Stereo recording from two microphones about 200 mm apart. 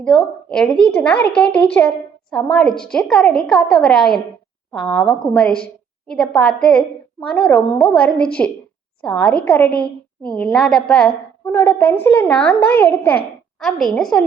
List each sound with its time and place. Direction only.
0.0 s a woman's voice: 5° left (ahead or behind)